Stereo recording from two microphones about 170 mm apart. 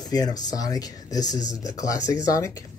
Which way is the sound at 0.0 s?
25° left (ahead or behind).